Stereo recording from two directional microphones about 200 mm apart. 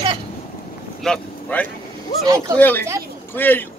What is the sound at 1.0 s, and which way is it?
A man's voice, 5° left (ahead or behind).